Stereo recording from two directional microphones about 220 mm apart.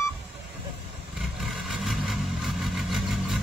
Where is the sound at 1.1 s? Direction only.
Centre (ahead or behind).